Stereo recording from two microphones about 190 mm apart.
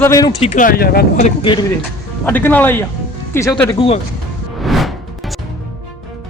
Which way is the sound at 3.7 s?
30° left (ahead or behind).